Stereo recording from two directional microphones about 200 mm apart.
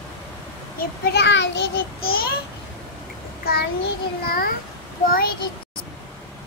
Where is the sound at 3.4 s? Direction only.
50° left (ahead or behind).